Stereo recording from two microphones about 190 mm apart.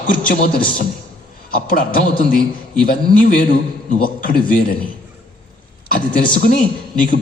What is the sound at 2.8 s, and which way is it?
A man's voice, 45° left (ahead or behind).